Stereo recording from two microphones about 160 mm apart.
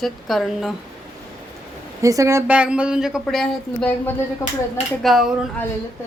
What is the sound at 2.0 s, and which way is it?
Speech, 20° right (ahead or behind).